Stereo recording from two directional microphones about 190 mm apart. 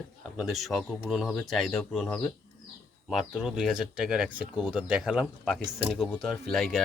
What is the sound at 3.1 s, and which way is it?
Speech, 5° right (ahead or behind).